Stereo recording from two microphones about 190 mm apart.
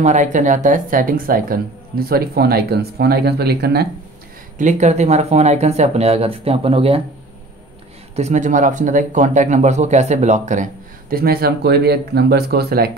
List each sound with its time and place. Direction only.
0.0 s a man's voice: 40° right (ahead or behind); by 3.8 s 60° right (ahead or behind)
4.6 s speech: 40° right (ahead or behind)
8.2 s a man's voice: 40° right (ahead or behind); by 12.9 s 55° right (ahead or behind)